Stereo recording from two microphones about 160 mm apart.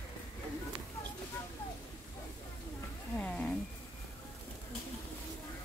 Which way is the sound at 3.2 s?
5° left (ahead or behind).